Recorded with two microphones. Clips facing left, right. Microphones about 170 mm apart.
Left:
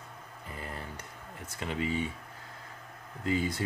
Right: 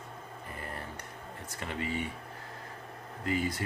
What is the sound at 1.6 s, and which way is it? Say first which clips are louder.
Speech: left 3 dB; 20° left (ahead or behind).